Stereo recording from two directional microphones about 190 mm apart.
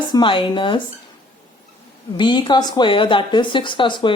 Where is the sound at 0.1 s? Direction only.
25° left (ahead or behind).